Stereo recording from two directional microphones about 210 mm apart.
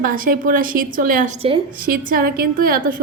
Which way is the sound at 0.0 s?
40° right (ahead or behind).